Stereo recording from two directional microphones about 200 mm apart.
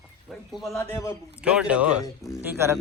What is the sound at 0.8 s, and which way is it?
Speech, 15° left (ahead or behind).